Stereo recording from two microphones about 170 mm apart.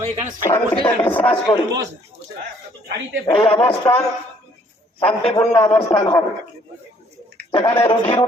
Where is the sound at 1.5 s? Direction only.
35° left (ahead or behind).